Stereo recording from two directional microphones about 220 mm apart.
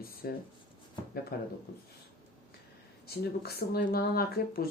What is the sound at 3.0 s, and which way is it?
Speech, 45° left (ahead or behind).